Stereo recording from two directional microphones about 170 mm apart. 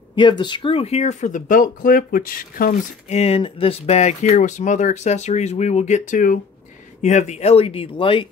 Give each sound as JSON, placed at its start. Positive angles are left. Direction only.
{"t": 0.1, "sound": "speech", "side_deg": 30}
{"t": 3.1, "sound": "speech", "side_deg": 35}